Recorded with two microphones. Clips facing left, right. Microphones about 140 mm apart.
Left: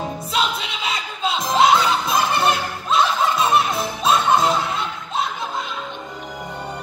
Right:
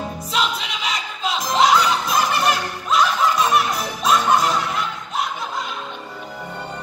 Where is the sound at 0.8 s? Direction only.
25° left (ahead or behind).